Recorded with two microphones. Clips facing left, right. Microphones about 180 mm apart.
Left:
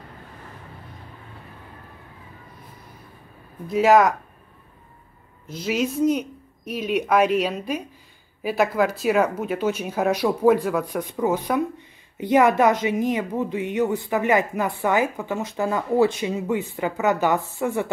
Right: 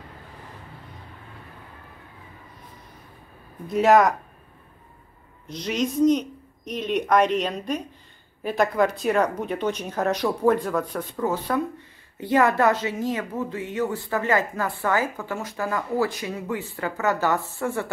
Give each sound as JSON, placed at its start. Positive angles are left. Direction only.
{"t": 3.6, "sound": "speech", "side_deg": 0}
{"t": 5.5, "sound": "a woman's voice", "side_deg": 5}